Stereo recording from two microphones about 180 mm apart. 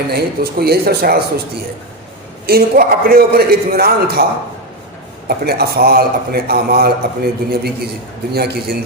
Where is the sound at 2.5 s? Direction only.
55° right (ahead or behind).